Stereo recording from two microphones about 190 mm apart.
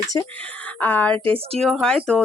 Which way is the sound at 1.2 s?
30° right (ahead or behind).